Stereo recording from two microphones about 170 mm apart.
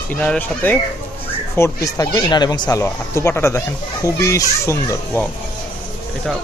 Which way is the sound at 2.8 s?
15° left (ahead or behind).